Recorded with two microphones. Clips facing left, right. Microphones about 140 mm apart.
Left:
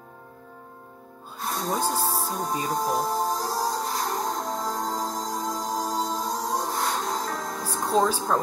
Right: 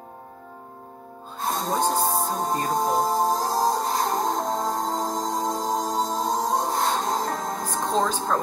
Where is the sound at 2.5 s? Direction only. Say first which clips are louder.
Right 2 dB; centre (ahead or behind).